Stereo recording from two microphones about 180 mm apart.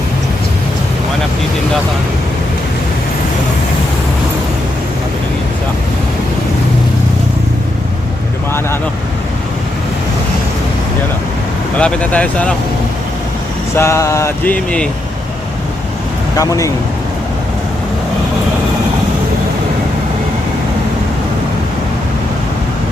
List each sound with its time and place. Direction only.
11.8 s speech: 5° left (ahead or behind)
13.7 s a sound: 15° left (ahead or behind)
16.4 s speech: 20° left (ahead or behind)